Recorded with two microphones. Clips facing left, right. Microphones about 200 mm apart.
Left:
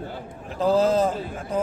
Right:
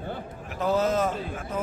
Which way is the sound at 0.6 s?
30° left (ahead or behind).